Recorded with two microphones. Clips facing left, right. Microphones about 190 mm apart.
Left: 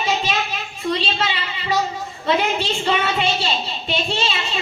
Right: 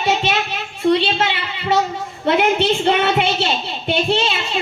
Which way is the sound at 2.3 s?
65° right (ahead or behind).